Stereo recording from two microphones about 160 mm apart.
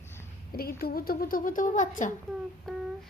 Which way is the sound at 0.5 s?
70° left (ahead or behind).